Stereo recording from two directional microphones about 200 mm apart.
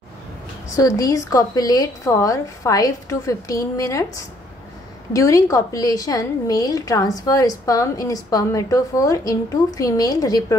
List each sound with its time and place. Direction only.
0.7 s a woman's voice: 15° left (ahead or behind)